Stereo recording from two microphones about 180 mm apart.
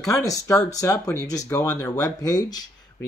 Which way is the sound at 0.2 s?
20° left (ahead or behind).